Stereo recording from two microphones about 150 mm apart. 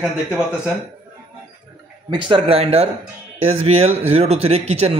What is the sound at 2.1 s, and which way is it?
Speech, 35° right (ahead or behind).